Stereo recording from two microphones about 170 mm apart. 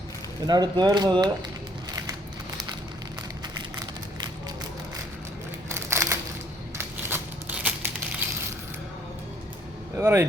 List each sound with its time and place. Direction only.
0.4 s speech: 25° right (ahead or behind)
5.6 s a sound: 15° right (ahead or behind)
10.0 s speech: 15° right (ahead or behind)